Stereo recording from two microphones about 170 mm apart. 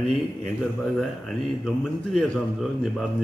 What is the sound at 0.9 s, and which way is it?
A man's voice, centre (ahead or behind).